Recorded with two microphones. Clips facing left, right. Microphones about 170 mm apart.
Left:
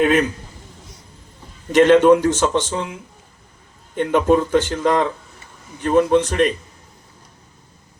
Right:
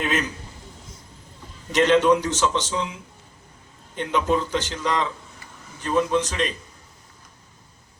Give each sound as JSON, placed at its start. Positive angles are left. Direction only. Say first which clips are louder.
{"t": 0.0, "sound": "a man's voice", "louder": "left 9 dB", "side_deg": 55}
{"t": 1.7, "sound": "a man's voice", "louder": "left 6 dB", "side_deg": 50}